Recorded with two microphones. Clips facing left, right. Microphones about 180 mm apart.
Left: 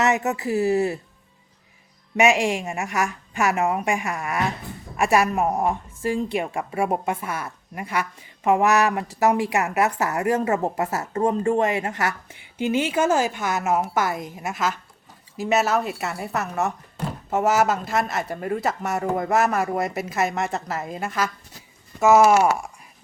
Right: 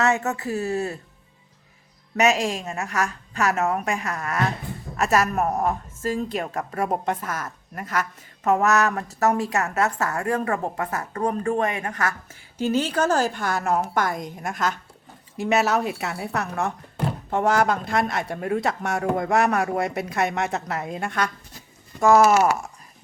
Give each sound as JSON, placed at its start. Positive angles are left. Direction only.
{"t": 0.0, "sound": "a woman's voice", "side_deg": 20}
{"t": 2.2, "sound": "a woman's voice", "side_deg": 15}
{"t": 12.6, "sound": "a woman's voice", "side_deg": 10}